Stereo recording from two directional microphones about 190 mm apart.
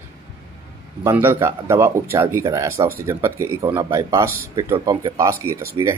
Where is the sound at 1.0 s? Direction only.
15° right (ahead or behind).